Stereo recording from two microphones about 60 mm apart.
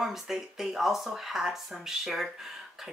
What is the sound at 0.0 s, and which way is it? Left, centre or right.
Speech, centre.